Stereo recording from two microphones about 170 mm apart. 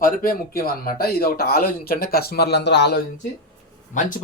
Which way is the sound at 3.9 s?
50° left (ahead or behind).